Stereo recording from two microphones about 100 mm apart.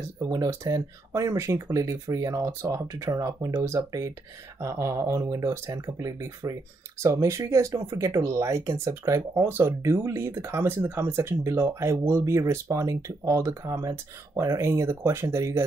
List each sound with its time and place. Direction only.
0.2 s speech: 35° right (ahead or behind)